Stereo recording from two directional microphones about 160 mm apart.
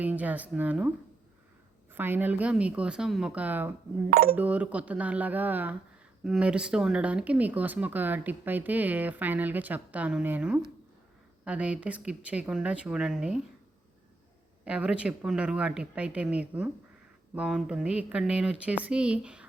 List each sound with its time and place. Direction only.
0.0 s speech: 10° right (ahead or behind)
4.1 s speech: 70° right (ahead or behind)
4.4 s speech: 10° right (ahead or behind)
14.6 s speech: 5° right (ahead or behind)